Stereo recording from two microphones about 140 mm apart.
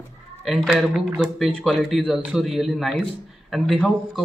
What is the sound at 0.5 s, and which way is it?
A man's voice, centre (ahead or behind).